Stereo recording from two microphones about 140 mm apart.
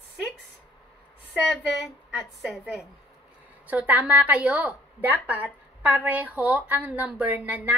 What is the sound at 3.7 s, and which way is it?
A woman's voice, 10° right (ahead or behind).